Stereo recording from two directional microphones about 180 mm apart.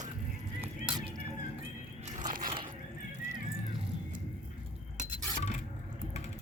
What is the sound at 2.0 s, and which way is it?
Biting, 40° right (ahead or behind).